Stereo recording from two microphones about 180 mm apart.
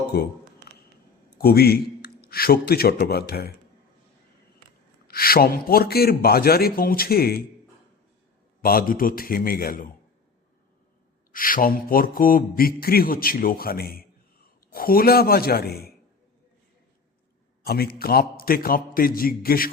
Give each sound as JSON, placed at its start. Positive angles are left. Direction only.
{"t": 0.1, "sound": "a man's voice", "side_deg": 60}
{"t": 0.7, "sound": "a sound", "side_deg": 60}
{"t": 1.4, "sound": "a man's voice", "side_deg": 60}
{"t": 5.0, "sound": "a man's voice", "side_deg": 55}
{"t": 8.6, "sound": "mantra", "side_deg": 55}
{"t": 11.3, "sound": "mantra", "side_deg": 50}
{"t": 14.7, "sound": "a man's voice", "side_deg": 55}
{"t": 17.6, "sound": "a man's voice", "side_deg": 60}